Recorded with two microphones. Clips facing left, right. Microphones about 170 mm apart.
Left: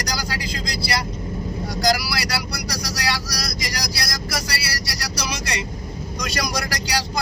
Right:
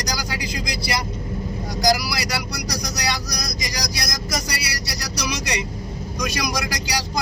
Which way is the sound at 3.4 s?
15° right (ahead or behind).